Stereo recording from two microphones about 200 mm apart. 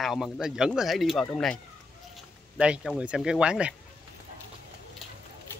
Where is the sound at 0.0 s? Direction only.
Centre (ahead or behind).